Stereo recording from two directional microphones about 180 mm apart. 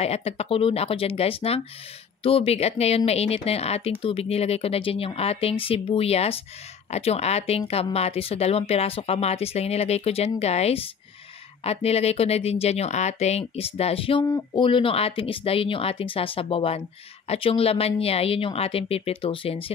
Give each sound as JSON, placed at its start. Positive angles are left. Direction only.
{"t": 0.0, "sound": "speech", "side_deg": 35}